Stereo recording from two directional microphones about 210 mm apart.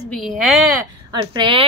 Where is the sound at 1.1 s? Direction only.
20° right (ahead or behind).